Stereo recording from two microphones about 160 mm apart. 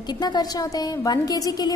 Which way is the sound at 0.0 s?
25° left (ahead or behind).